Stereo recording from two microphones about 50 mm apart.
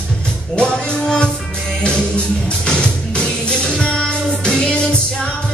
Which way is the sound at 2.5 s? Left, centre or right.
Centre.